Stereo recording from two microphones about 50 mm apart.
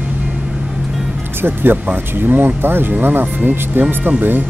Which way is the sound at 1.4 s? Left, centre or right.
Right.